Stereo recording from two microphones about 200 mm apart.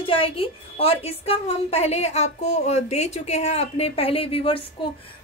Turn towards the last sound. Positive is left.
turn(degrees=30)  # may be behind; listen again after turning